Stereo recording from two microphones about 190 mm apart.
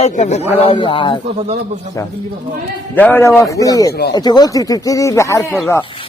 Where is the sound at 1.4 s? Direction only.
35° right (ahead or behind).